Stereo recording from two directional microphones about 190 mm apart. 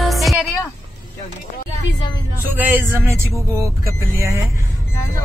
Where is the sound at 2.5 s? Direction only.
10° right (ahead or behind).